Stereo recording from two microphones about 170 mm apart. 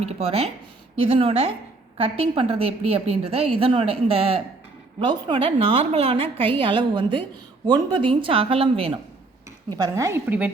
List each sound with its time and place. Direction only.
0.0 s a woman's voice: 35° right (ahead or behind)
9.7 s a woman's voice: 20° right (ahead or behind)